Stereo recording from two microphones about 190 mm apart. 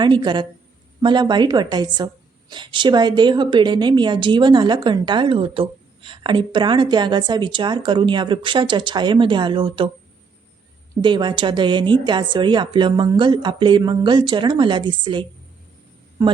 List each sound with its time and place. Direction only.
0.0 s a woman's voice: 25° right (ahead or behind)
11.0 s a woman's voice: 25° right (ahead or behind)